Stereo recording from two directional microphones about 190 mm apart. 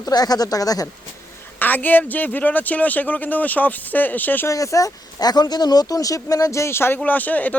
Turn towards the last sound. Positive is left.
turn(degrees=10)  # may be behind; listen again after turning